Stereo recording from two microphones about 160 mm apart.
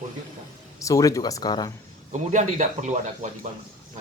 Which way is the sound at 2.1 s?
50° right (ahead or behind).